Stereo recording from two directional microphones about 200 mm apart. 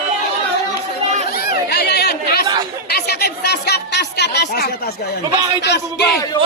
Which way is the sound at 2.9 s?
55° left (ahead or behind).